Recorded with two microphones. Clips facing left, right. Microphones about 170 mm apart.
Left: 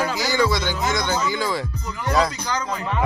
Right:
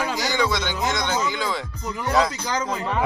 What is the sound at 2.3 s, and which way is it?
Speech, 20° right (ahead or behind).